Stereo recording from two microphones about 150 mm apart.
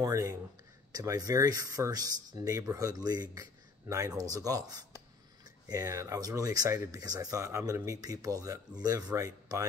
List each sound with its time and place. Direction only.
0.0 s speech: 20° right (ahead or behind)